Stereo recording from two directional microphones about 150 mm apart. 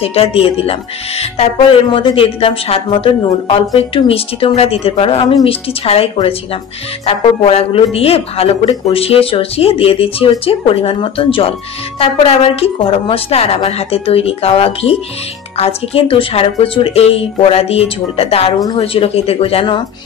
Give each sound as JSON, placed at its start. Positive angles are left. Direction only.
{"t": 0.0, "sound": "speech", "side_deg": 40}